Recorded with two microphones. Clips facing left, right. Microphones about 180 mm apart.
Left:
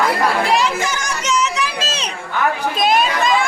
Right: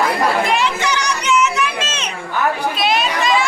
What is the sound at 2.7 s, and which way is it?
Speech, 50° left (ahead or behind).